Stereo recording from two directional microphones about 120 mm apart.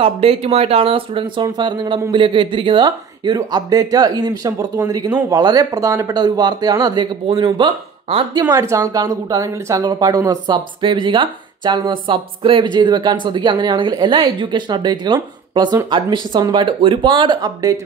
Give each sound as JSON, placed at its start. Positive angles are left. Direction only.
{"t": 0.0, "sound": "speech", "side_deg": -55}
{"t": 8.4, "sound": "speech", "side_deg": -25}